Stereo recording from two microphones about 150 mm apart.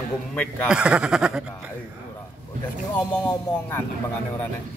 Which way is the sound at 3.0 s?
10° left (ahead or behind).